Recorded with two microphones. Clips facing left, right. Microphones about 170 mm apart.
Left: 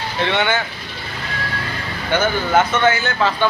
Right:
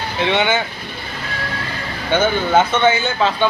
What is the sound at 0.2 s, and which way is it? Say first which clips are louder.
Speech: right 2 dB; 15° right (ahead or behind).